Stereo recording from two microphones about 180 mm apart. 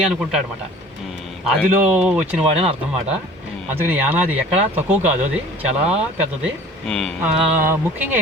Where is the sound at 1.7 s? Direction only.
10° right (ahead or behind).